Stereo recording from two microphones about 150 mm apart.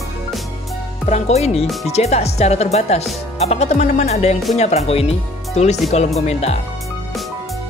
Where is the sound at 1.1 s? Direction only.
45° left (ahead or behind).